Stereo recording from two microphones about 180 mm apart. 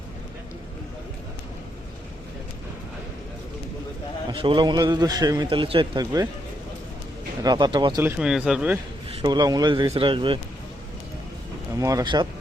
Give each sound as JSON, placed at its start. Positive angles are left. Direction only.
{"t": 4.3, "sound": "a man's voice", "side_deg": -25}
{"t": 7.4, "sound": "a man's voice", "side_deg": -25}
{"t": 8.0, "sound": "speech", "side_deg": -5}
{"t": 9.0, "sound": "a man's voice", "side_deg": -25}
{"t": 11.8, "sound": "a man's voice", "side_deg": -20}